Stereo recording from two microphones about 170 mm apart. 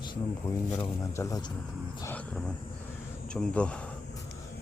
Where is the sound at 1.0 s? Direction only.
20° left (ahead or behind).